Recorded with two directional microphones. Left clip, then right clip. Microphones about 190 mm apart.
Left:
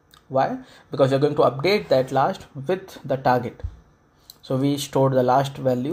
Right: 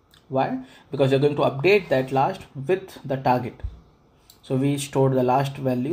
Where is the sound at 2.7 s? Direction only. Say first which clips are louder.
Even; 20° left (ahead or behind).